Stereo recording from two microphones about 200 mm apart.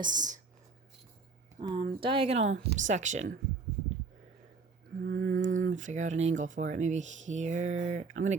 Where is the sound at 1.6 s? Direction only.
25° right (ahead or behind).